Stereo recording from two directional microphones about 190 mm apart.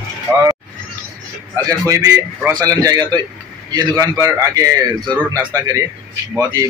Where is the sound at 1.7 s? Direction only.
15° right (ahead or behind).